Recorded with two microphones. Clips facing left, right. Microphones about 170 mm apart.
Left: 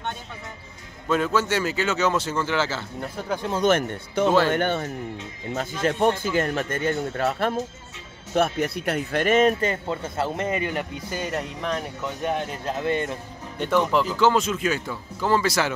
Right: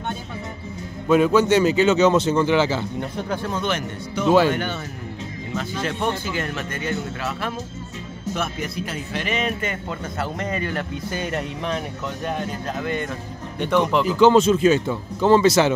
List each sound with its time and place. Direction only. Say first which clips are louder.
1.0 s speech: right 6 dB; 15° right (ahead or behind)
3.0 s speech: right 2 dB; 5° left (ahead or behind)
3.5 s speech: left 4 dB; 50° left (ahead or behind)
8.4 s speech: left 7 dB; 60° left (ahead or behind); by 11.2 s 10° left (ahead or behind)
11.2 s speech: even; centre (ahead or behind)
12.6 s speech: left 4 dB; 30° left (ahead or behind)
13.6 s speech: right 2 dB; 5° left (ahead or behind)
14.0 s speech: right 6 dB; 15° right (ahead or behind)
14.4 s speech: right 9 dB; 30° right (ahead or behind)